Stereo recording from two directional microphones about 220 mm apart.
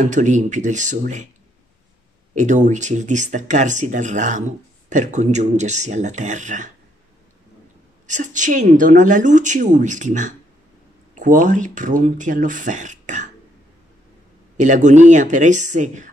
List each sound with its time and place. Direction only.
0.0 s speech: 35° right (ahead or behind)
2.3 s speech: 35° right (ahead or behind)
8.1 s speech: 35° right (ahead or behind)
14.6 s speech: 35° right (ahead or behind)